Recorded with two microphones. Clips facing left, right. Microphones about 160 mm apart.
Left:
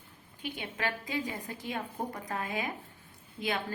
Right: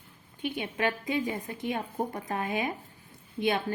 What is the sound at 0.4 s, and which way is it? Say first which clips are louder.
A woman's voice: right 6 dB; 20° right (ahead or behind).